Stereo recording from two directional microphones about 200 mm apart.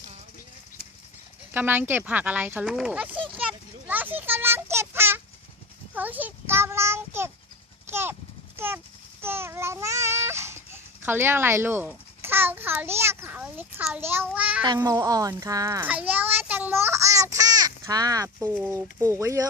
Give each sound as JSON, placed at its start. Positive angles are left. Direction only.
{"t": 1.5, "sound": "speech", "side_deg": -10}
{"t": 3.2, "sound": "a sound", "side_deg": -5}
{"t": 5.9, "sound": "a child's voice", "side_deg": -10}
{"t": 7.9, "sound": "a sound", "side_deg": -10}
{"t": 8.5, "sound": "speech", "side_deg": -10}
{"t": 9.2, "sound": "babbling", "side_deg": -10}
{"t": 14.6, "sound": "a child's voice", "side_deg": -20}